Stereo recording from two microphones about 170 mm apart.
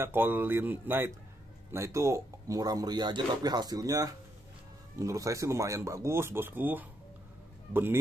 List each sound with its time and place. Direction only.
0.0 s speech: 10° right (ahead or behind)